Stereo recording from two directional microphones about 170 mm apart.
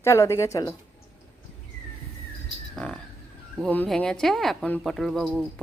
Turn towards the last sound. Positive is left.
turn(degrees=0)  # may be behind; listen again after turning